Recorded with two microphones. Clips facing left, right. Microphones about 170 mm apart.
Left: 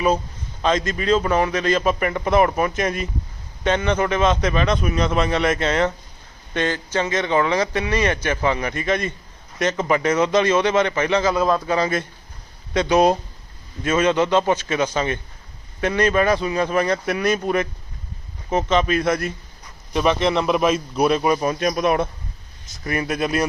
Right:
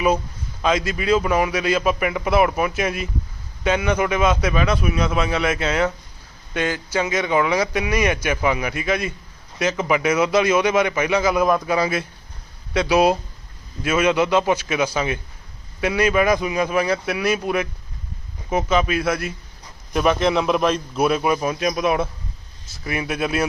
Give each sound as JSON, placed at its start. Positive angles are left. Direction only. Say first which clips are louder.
{"t": 0.6, "sound": "a man's voice", "louder": "even", "side_deg": -5}